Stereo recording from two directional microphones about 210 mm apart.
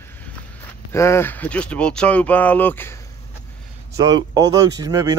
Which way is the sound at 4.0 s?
15° right (ahead or behind).